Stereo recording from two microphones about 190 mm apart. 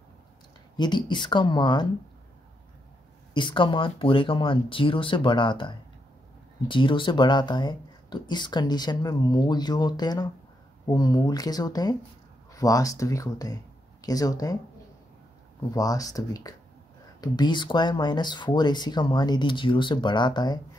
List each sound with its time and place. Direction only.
0.7 s speech: 25° left (ahead or behind)
3.3 s speech: 25° left (ahead or behind)
15.7 s speech: 20° left (ahead or behind)